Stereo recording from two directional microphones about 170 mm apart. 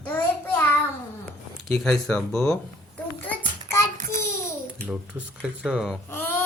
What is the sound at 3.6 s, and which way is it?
Child singing, 15° left (ahead or behind).